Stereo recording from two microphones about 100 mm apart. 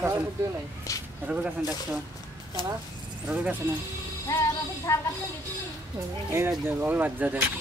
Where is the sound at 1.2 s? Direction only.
15° right (ahead or behind).